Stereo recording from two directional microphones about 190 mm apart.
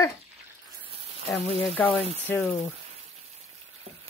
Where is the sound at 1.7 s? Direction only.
5° left (ahead or behind).